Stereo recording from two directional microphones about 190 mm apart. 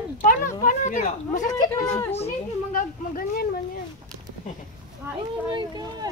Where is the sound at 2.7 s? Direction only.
50° left (ahead or behind).